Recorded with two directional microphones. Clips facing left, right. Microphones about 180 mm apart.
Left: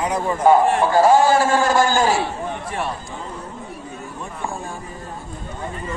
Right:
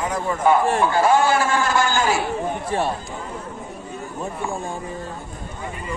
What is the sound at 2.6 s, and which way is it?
Speech, 35° right (ahead or behind).